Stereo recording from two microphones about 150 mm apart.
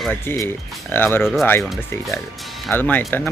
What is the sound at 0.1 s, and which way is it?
Speech, 15° left (ahead or behind).